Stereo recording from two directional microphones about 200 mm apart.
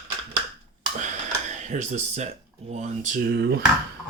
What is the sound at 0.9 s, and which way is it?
Speech, 35° right (ahead or behind).